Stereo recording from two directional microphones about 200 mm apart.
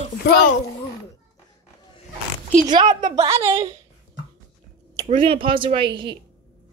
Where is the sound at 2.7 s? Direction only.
20° right (ahead or behind).